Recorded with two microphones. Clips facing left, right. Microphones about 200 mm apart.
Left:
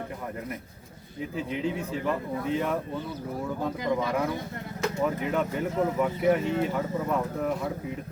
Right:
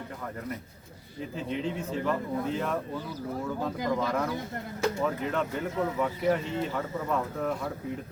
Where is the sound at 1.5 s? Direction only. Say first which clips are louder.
Even; 5° left (ahead or behind).